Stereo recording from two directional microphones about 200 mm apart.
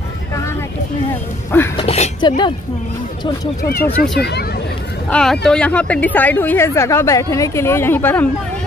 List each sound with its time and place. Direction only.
1.8 s a woman's voice: 30° left (ahead or behind)
3.6 s speech: 50° left (ahead or behind)
3.9 s speech: centre (ahead or behind)
4.2 s speech: 55° left (ahead or behind)
5.1 s speech: 5° left (ahead or behind)